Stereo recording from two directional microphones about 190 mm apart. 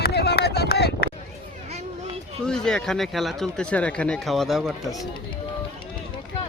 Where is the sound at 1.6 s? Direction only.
35° right (ahead or behind).